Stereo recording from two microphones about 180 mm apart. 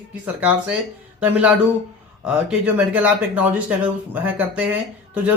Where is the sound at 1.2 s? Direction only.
10° right (ahead or behind).